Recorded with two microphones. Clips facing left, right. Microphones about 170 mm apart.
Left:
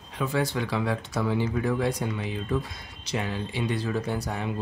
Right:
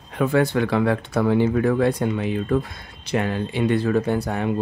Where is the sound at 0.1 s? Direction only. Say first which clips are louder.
Right 8 dB; 55° right (ahead or behind).